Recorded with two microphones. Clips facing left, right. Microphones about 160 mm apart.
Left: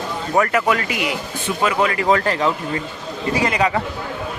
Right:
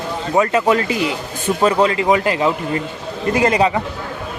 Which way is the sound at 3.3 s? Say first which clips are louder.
Right 5 dB; 50° right (ahead or behind).